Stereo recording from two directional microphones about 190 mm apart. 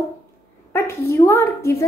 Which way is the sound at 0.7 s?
15° left (ahead or behind).